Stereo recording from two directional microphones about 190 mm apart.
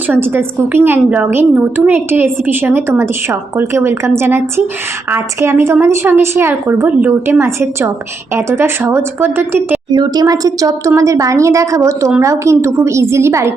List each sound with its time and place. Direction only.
0.1 s a woman's voice: 10° right (ahead or behind)